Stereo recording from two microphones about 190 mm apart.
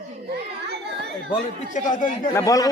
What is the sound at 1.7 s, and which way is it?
Speech, 40° left (ahead or behind).